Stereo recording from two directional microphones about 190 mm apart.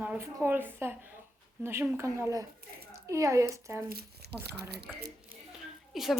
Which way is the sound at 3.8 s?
55° right (ahead or behind).